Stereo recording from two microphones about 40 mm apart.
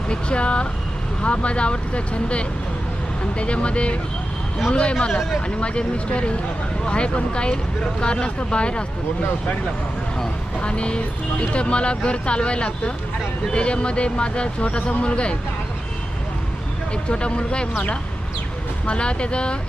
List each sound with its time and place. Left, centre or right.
0.1 s speech: left
10.6 s speech: left
16.9 s speech: left
18.9 s speech: left